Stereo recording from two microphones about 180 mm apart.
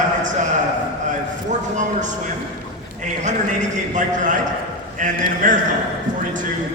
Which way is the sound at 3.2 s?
45° right (ahead or behind).